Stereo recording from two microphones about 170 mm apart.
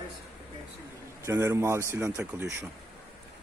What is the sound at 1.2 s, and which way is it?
Speech, 15° right (ahead or behind).